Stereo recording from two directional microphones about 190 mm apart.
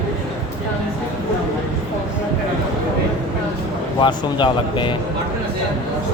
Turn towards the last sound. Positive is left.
turn(degrees=25)  # may be behind; listen again after turning